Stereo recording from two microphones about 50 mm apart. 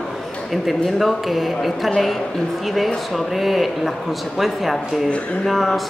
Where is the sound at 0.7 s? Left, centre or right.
Centre.